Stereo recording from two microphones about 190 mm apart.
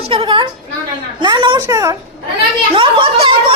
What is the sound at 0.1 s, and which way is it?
A woman's voice, 25° right (ahead or behind).